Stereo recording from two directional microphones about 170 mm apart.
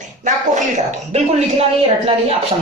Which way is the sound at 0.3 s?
45° right (ahead or behind).